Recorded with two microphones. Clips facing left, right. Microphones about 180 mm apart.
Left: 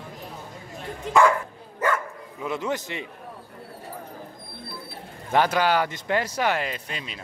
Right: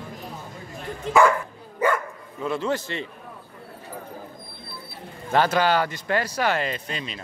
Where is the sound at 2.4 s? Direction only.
15° left (ahead or behind).